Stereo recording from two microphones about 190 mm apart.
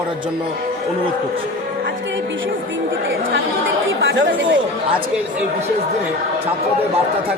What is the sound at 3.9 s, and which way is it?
Speech, 80° right.